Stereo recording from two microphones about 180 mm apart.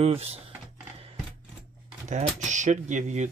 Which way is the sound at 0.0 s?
35° right (ahead or behind).